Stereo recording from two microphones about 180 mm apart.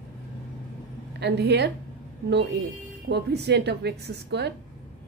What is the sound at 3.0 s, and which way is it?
A woman's voice, 65° right (ahead or behind).